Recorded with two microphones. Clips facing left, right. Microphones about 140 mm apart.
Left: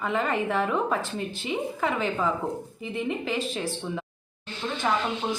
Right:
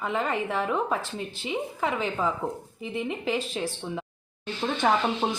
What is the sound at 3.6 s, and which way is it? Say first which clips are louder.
Speech: even; 15° right (ahead or behind).